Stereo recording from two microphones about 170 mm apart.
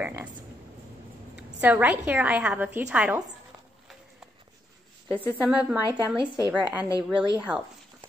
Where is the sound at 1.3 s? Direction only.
10° right (ahead or behind).